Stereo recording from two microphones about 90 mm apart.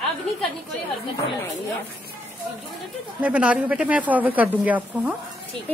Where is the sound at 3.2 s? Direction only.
15° right (ahead or behind).